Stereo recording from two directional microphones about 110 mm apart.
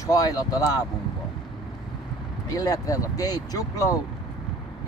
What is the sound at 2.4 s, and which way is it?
Speech, 35° left (ahead or behind).